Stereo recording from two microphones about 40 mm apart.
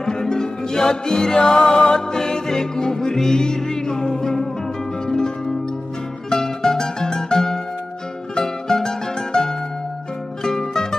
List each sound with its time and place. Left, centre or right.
0.0 s music: centre
6.3 s music: centre